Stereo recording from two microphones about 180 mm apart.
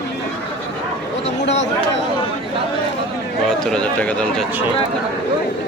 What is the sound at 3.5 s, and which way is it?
Speech, 5° left (ahead or behind).